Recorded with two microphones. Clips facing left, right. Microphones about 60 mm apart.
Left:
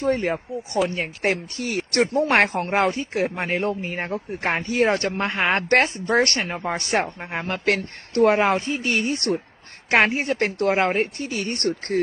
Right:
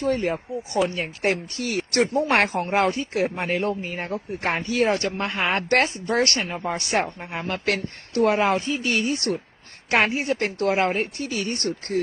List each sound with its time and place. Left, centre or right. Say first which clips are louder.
0.0 s a woman's voice: left 1 dB; left